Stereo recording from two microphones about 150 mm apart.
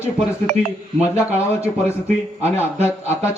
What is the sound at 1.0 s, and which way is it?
A man's voice, 20° left (ahead or behind).